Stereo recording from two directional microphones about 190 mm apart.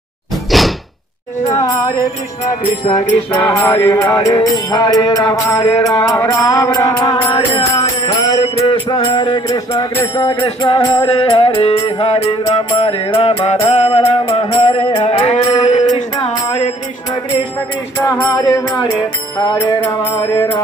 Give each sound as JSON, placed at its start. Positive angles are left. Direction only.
{"t": 0.5, "sound": "door", "side_deg": 0}
{"t": 1.5, "sound": "music", "side_deg": 15}
{"t": 3.3, "sound": "music", "side_deg": 10}
{"t": 14.2, "sound": "mantra", "side_deg": 25}
{"t": 18.0, "sound": "music", "side_deg": 20}